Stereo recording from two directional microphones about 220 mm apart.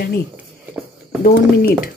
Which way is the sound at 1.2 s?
45° left (ahead or behind).